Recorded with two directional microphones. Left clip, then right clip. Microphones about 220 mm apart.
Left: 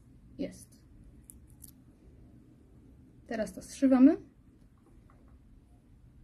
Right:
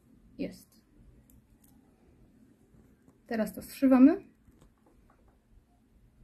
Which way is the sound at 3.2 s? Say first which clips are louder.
Right 2 dB; centre (ahead or behind).